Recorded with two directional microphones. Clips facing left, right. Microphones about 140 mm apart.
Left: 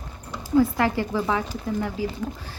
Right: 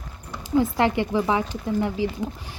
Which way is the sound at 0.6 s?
20° right (ahead or behind).